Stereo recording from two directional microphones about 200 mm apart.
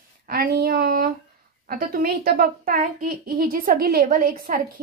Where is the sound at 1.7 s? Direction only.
45° right (ahead or behind).